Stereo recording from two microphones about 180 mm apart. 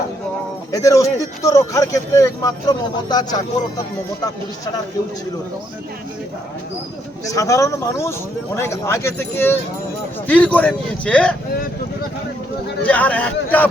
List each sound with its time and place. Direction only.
0.7 s a man's voice: 20° left (ahead or behind)
7.3 s a man's voice: 20° left (ahead or behind)
12.8 s a man's voice: 10° left (ahead or behind)